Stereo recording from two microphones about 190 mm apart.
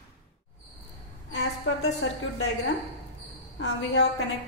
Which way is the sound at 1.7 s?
90° left.